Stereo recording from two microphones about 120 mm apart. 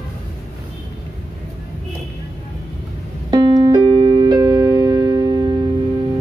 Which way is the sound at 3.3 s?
35° right (ahead or behind).